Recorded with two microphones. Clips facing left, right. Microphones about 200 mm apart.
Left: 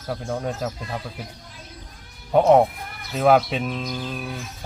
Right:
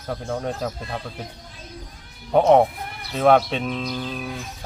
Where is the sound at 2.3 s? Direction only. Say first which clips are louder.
Even; centre (ahead or behind).